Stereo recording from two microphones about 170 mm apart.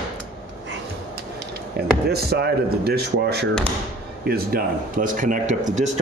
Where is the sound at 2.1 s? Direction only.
70° right (ahead or behind).